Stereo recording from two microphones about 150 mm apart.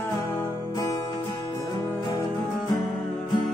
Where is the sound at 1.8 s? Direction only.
15° left (ahead or behind).